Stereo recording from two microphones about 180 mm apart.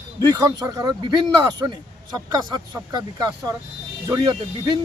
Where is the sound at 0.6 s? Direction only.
25° right (ahead or behind).